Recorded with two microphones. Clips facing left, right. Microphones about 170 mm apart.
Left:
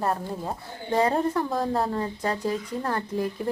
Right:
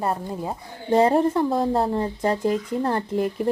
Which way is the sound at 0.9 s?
20° right (ahead or behind).